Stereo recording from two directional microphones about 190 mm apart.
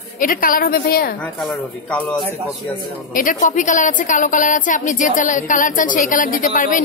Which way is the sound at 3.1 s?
45° left (ahead or behind).